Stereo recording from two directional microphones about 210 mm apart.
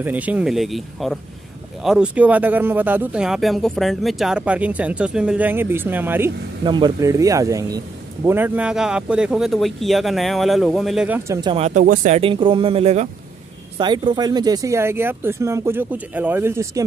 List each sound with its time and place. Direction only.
0.0 s speech: 5° right (ahead or behind)
6.6 s speech: 20° right (ahead or behind)
11.4 s speech: 30° right (ahead or behind); by 16.8 s 10° right (ahead or behind)